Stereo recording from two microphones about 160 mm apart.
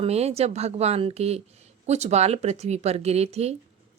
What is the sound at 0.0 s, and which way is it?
A woman's voice, 40° right (ahead or behind).